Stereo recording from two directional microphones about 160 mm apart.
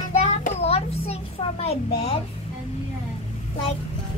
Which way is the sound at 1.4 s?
40° left (ahead or behind).